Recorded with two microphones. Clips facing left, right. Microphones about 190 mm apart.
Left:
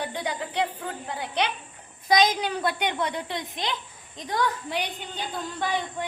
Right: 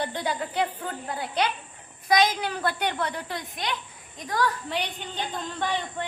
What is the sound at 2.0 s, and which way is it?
A woman's voice, 20° left (ahead or behind).